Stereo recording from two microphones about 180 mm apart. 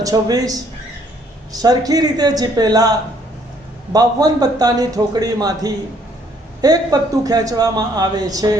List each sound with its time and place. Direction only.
0.0 s a man's voice: 20° right (ahead or behind)
3.9 s a man's voice: 20° right (ahead or behind)